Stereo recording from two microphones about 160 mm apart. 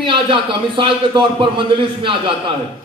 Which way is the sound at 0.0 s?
30° right (ahead or behind).